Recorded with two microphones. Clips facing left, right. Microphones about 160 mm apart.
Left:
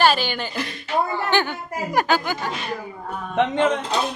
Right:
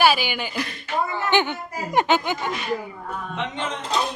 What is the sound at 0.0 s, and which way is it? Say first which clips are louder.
A woman's voice: left 1 dB; 10° right (ahead or behind).